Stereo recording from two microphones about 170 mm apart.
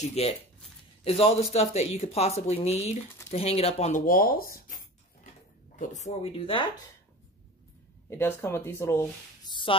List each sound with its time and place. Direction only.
0.1 s speech: 40° left (ahead or behind)
8.1 s speech: 15° left (ahead or behind)